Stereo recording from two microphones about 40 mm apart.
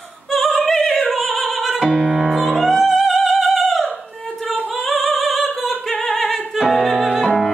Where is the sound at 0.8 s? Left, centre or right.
Centre.